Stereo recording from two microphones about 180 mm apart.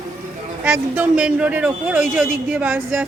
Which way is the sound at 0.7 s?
10° right (ahead or behind).